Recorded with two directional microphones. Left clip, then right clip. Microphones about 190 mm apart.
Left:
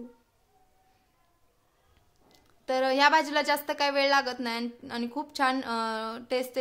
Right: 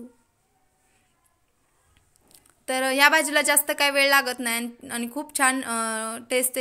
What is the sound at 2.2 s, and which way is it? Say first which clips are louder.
A woman's voice: right 2 dB; 10° right (ahead or behind).